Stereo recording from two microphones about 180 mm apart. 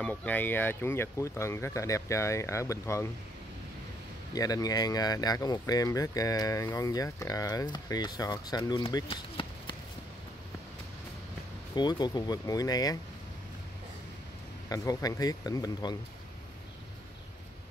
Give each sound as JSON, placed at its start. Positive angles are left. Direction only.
{"t": 0.0, "sound": "speech", "side_deg": 10}
{"t": 4.3, "sound": "speech", "side_deg": 20}
{"t": 9.0, "sound": "chop", "side_deg": 25}
{"t": 11.7, "sound": "speech", "side_deg": 25}
{"t": 14.7, "sound": "speech", "side_deg": 20}